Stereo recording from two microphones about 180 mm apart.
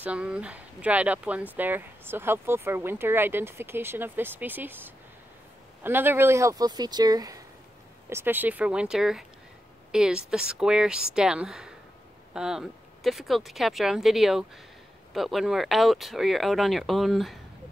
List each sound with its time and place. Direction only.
0.0 s speech: 5° right (ahead or behind)